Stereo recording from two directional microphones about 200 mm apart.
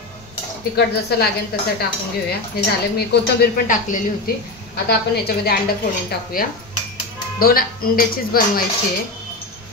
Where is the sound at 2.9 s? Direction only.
50° left (ahead or behind).